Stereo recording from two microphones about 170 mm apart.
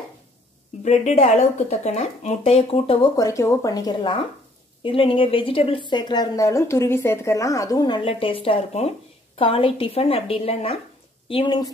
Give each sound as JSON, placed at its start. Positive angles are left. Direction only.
{"t": 0.8, "sound": "a woman's voice", "side_deg": 40}
{"t": 3.2, "sound": "a woman's voice", "side_deg": 20}